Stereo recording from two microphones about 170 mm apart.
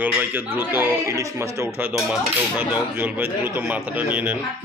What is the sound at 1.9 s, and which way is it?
Speech, 5° right (ahead or behind).